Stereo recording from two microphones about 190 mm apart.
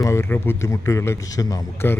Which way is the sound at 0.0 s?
15° left (ahead or behind).